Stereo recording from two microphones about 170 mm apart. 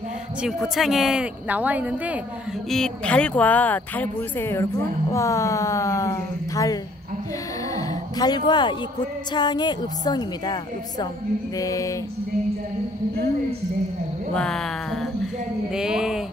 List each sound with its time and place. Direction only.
0.4 s speech: centre (ahead or behind)
2.7 s speech: 5° left (ahead or behind)
7.7 s a sound: 20° left (ahead or behind)
9.3 s a woman's voice: 25° left (ahead or behind)
14.3 s speech: 5° left (ahead or behind)